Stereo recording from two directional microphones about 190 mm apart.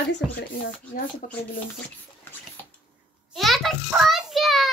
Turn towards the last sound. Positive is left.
turn(degrees=0)  # may be behind; listen again after turning